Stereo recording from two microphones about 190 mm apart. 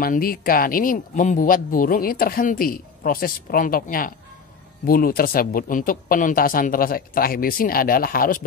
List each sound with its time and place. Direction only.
0.0 s speech: 50° left (ahead or behind)